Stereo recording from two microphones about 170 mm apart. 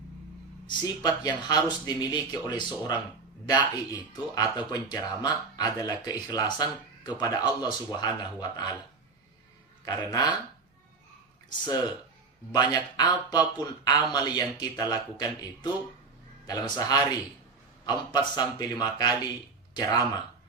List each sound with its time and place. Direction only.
0.7 s speech: 25° left (ahead or behind)
9.8 s speech: 20° left (ahead or behind)
12.5 s speech: 25° left (ahead or behind)